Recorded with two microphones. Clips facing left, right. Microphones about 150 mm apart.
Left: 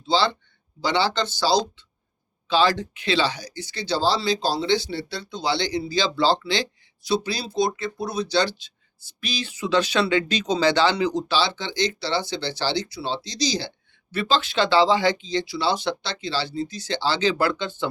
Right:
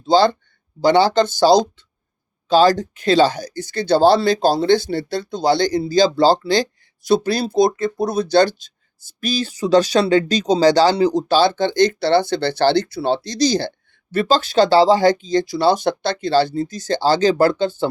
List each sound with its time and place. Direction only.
0.0 s speech: 45° right (ahead or behind)